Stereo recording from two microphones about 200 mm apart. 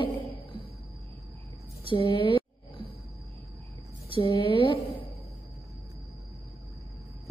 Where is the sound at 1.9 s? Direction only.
25° left (ahead or behind).